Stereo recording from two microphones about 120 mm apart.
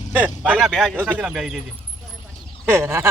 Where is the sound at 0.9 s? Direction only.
15° right (ahead or behind).